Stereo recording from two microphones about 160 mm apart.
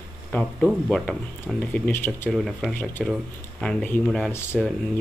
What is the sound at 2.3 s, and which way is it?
Speech, centre (ahead or behind).